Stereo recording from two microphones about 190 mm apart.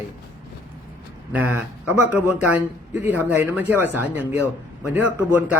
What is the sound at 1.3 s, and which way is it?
Speech, 5° right (ahead or behind).